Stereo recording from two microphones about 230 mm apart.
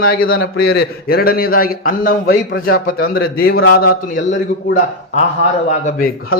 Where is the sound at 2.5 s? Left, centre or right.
Left.